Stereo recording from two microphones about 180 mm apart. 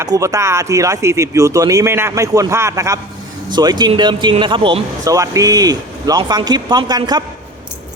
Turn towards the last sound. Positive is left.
turn(degrees=-20)  # may be behind; listen again after turning